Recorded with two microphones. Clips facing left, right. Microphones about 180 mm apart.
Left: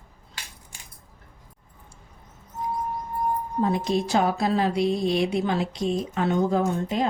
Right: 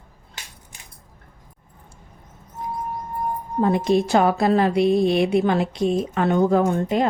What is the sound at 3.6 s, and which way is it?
A woman's voice, 60° right (ahead or behind).